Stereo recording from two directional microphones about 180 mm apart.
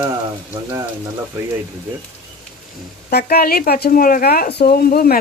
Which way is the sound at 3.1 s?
60° left (ahead or behind).